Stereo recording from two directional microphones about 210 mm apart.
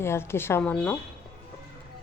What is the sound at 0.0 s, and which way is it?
Speech, 10° left (ahead or behind).